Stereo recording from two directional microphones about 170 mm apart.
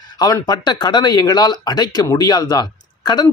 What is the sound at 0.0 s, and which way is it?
Speech, 25° left (ahead or behind).